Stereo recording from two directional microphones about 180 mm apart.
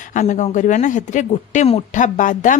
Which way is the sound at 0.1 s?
45° left (ahead or behind).